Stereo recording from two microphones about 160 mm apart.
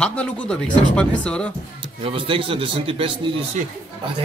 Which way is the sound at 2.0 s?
35° right (ahead or behind).